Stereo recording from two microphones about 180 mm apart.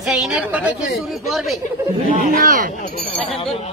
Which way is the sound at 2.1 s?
50° right (ahead or behind).